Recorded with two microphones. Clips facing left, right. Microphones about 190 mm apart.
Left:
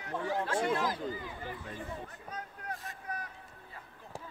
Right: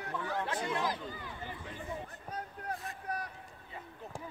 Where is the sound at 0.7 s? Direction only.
20° right (ahead or behind).